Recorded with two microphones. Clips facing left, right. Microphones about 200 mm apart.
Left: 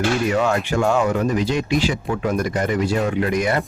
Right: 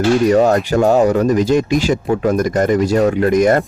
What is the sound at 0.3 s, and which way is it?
Speech, 40° right (ahead or behind).